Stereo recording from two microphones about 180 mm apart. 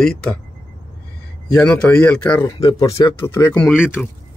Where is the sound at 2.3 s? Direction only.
25° left (ahead or behind).